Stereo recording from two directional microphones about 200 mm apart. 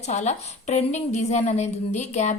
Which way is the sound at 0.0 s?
35° left (ahead or behind).